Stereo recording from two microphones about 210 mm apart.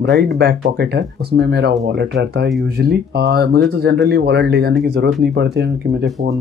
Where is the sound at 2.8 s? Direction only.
50° right (ahead or behind).